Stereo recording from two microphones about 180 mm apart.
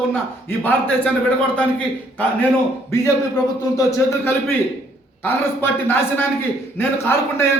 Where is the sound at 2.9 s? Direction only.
20° left (ahead or behind).